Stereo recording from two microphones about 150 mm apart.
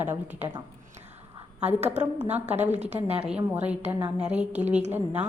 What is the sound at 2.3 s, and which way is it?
Speech, 50° right (ahead or behind).